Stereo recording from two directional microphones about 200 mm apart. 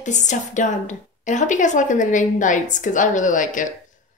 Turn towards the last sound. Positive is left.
turn(degrees=40)  # may be behind; listen again after turning